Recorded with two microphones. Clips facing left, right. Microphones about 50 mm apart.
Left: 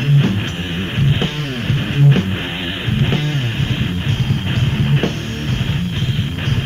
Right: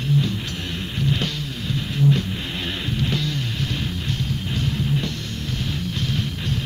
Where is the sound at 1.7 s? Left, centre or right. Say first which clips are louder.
Left 4 dB; left.